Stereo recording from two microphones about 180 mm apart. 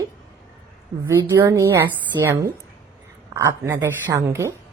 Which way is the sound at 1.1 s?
15° right (ahead or behind).